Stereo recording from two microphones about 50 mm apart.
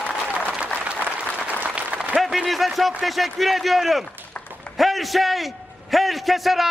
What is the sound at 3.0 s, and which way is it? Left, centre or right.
A man's voice, centre.